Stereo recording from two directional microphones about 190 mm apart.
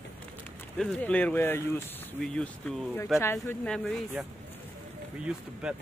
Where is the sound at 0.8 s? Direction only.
5° left (ahead or behind).